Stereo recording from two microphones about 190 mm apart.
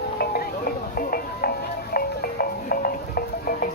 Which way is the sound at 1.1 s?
50° left (ahead or behind).